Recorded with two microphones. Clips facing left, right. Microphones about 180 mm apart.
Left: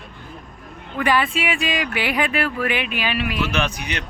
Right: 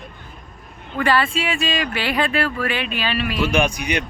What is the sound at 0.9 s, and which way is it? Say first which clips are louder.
Speech: right 1 dB; 15° left (ahead or behind).